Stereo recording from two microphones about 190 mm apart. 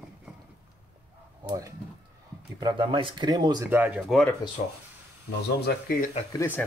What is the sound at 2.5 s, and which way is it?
Speech, 25° right (ahead or behind).